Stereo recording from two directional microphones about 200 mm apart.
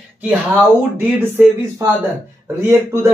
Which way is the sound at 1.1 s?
10° right (ahead or behind).